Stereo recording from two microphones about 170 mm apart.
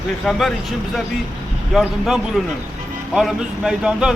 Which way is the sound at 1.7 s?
Centre (ahead or behind).